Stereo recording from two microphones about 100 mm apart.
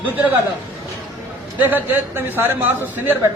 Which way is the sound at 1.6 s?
20° right (ahead or behind).